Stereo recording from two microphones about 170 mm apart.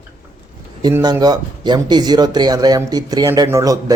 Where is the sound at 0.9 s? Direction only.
20° right (ahead or behind).